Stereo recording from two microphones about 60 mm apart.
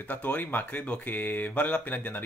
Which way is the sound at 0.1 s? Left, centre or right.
Left.